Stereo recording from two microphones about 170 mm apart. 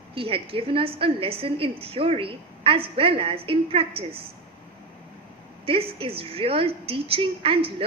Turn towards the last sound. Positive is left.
turn(degrees=-35)  # may be behind; listen again after turning